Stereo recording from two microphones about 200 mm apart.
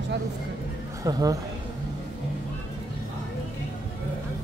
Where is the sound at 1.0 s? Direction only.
15° right (ahead or behind).